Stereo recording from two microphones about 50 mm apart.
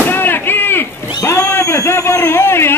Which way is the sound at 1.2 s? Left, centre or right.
Left.